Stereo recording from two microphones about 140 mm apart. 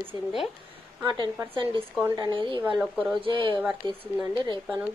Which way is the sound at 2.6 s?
10° right (ahead or behind).